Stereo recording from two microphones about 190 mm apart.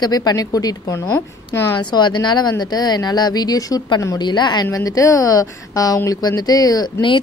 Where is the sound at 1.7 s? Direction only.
25° left (ahead or behind).